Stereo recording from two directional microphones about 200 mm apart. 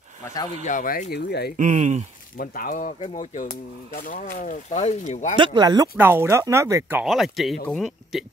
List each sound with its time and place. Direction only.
0.7 s speech: 45° left (ahead or behind)
1.6 s speech: 35° right (ahead or behind)
2.3 s speech: 45° left (ahead or behind)
5.3 s speech: 25° right (ahead or behind)
5.9 s speech: 10° right (ahead or behind)